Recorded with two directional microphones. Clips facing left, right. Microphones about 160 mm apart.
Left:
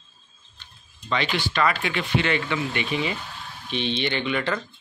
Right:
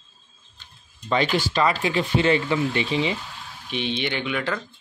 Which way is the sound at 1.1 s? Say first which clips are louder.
Right 4 dB; 40° right (ahead or behind).